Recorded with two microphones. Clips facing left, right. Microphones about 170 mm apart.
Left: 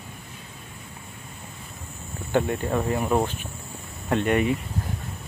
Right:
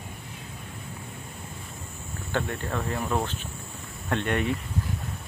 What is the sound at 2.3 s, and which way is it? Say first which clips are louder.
Speech: left 6 dB; 15° left (ahead or behind).